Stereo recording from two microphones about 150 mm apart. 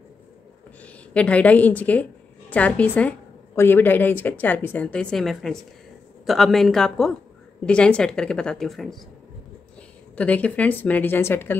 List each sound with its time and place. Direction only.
0.8 s a woman's voice: 10° left (ahead or behind)
10.1 s a woman's voice: 10° left (ahead or behind)